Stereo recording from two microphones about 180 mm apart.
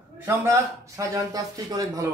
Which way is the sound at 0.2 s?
15° right (ahead or behind).